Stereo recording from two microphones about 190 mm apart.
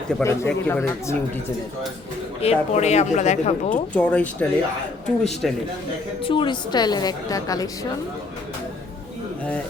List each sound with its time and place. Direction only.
0.1 s speech: 10° left (ahead or behind)
2.4 s speech: 35° left (ahead or behind)
3.9 s speech: 5° left (ahead or behind)
6.2 s a woman's voice: 25° left (ahead or behind)